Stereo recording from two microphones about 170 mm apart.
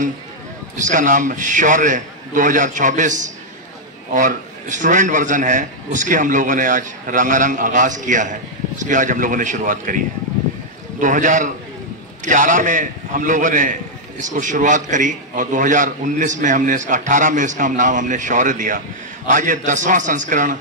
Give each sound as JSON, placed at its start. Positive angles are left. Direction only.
{"t": 0.7, "sound": "a man's voice", "side_deg": -45}
{"t": 11.0, "sound": "a man's voice", "side_deg": -50}